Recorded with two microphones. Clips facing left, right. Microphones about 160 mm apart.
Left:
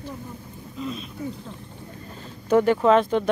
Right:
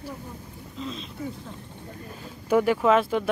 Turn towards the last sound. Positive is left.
turn(degrees=-5)  # may be behind; listen again after turning